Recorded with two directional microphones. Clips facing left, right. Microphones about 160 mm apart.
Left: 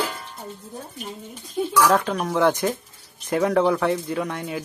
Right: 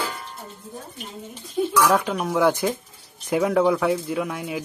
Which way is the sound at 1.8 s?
5° right (ahead or behind).